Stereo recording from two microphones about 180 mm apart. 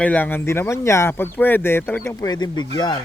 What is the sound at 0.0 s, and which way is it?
Speech, 10° left (ahead or behind).